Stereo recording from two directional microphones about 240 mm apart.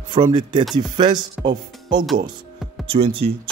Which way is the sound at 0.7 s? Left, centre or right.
Centre.